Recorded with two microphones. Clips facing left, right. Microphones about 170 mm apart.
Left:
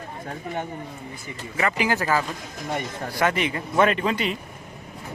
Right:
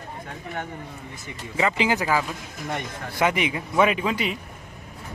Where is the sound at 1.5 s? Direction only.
20° right (ahead or behind); by 4.4 s 5° right (ahead or behind).